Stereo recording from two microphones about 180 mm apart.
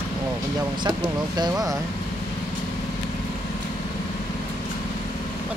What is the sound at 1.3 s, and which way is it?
Speech, 20° right (ahead or behind).